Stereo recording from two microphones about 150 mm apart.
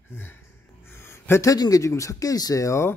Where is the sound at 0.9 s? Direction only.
15° left (ahead or behind).